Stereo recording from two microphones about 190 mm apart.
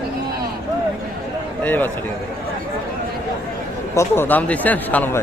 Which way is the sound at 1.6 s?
10° left (ahead or behind).